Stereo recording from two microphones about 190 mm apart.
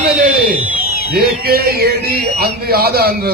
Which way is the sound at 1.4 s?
55° right (ahead or behind).